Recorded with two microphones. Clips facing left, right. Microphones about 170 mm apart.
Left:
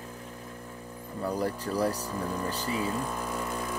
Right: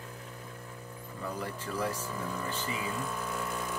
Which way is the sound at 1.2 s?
40° left (ahead or behind).